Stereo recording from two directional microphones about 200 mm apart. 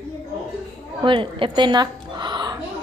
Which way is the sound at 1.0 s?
25° right (ahead or behind).